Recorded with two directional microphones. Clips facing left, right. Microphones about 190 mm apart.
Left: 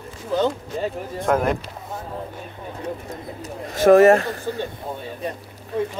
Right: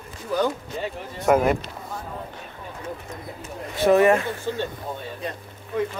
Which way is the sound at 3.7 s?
45° left (ahead or behind).